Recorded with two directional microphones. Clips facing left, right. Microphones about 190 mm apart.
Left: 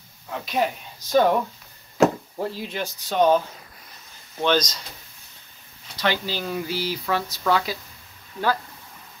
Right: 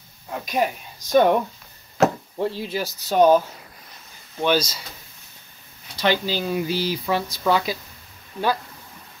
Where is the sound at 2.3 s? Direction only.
Centre (ahead or behind).